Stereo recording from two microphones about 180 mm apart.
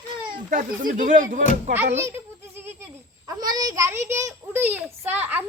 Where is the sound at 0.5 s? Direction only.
45° right (ahead or behind).